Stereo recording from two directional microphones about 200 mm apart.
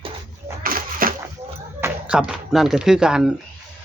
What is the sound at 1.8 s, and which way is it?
Speech, 5° right (ahead or behind).